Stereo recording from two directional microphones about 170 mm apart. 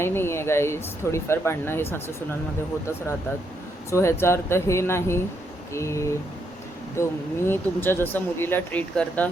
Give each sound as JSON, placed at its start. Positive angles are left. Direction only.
{"t": 0.0, "sound": "speech", "side_deg": 15}
{"t": 3.9, "sound": "speech", "side_deg": 15}